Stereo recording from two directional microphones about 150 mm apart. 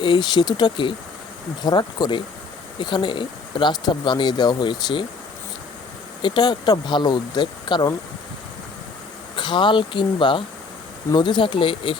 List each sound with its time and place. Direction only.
0.0 s speech: 30° left (ahead or behind)
6.2 s speech: 30° left (ahead or behind)
9.3 s speech: 35° left (ahead or behind)